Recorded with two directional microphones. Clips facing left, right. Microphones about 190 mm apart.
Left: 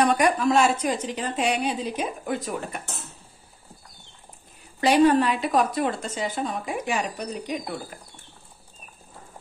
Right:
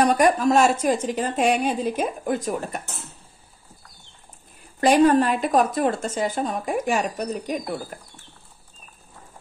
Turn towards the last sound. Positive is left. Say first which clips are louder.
# right 3 dB
turn(degrees=-45)  # may be behind; listen again after turning